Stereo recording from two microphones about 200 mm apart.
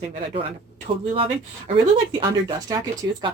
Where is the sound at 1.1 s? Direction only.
25° right (ahead or behind).